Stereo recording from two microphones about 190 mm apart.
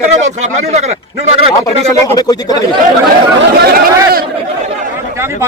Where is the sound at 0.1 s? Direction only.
35° right (ahead or behind).